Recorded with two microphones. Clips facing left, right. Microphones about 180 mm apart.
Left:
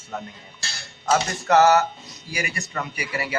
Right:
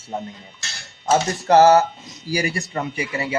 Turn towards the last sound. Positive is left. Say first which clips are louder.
# right 4 dB
turn(degrees=-25)  # may be behind; listen again after turning